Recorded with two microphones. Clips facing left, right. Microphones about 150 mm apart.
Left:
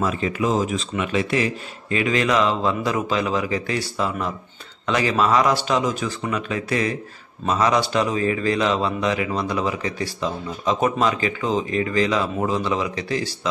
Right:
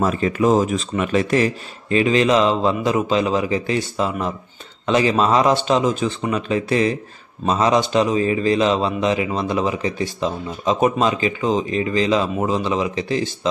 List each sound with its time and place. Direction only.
0.0 s a man's voice: 45° right (ahead or behind); by 13.5 s 25° right (ahead or behind)